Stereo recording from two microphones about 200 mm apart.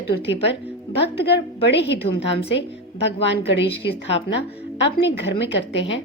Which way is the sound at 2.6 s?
60° left (ahead or behind).